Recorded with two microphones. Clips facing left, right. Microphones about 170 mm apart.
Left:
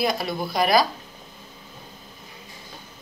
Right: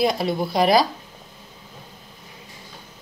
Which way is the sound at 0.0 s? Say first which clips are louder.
Right 4 dB; 30° right (ahead or behind).